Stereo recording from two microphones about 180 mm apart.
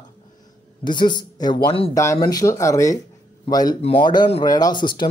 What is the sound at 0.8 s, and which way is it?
A man's voice, 25° left (ahead or behind).